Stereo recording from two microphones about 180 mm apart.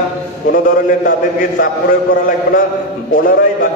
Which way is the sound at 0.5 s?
50° left (ahead or behind).